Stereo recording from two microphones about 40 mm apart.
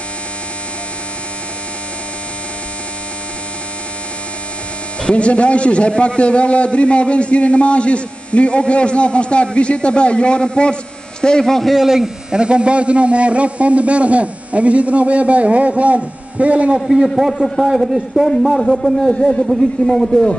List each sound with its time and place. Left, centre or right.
5.0 s a man's voice: left; by 11.7 s centre
11.7 s speech: centre
12.4 s a man's voice: right
17.4 s speech: centre
18.6 s a man's voice: centre